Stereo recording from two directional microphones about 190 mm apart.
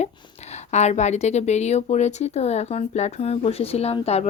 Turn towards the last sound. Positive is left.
turn(degrees=35)  # may be behind; listen again after turning